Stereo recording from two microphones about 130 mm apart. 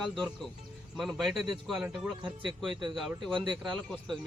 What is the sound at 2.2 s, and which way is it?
Speech, 40° right (ahead or behind).